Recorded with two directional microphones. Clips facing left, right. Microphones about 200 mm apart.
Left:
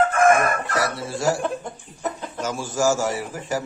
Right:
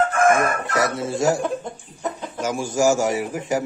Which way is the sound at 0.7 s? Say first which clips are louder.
Right 3 dB; 20° right (ahead or behind).